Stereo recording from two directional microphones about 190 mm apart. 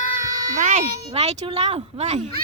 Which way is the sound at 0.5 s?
40° right (ahead or behind).